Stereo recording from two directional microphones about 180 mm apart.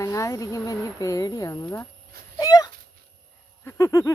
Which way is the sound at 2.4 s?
20° left (ahead or behind).